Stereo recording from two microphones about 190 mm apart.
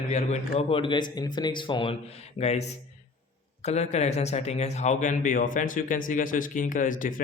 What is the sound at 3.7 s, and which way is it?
Speech, 35° left (ahead or behind).